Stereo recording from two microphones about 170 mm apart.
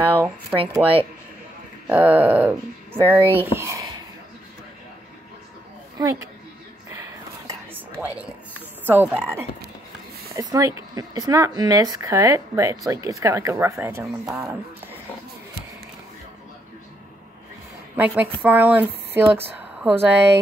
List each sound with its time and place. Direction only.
0.0 s speech: 10° right (ahead or behind)
1.9 s speech: 10° right (ahead or behind)
7.1 s whispering: 15° right (ahead or behind)
8.8 s speech: 10° right (ahead or behind)
17.9 s speech: 10° right (ahead or behind)